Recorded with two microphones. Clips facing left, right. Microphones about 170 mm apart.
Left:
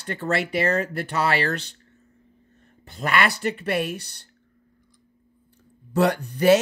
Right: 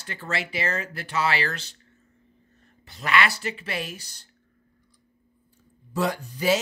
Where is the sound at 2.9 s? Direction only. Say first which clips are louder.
Left 1 dB; 50° left (ahead or behind).